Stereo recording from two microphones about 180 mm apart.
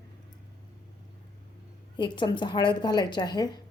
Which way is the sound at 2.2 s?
25° left (ahead or behind).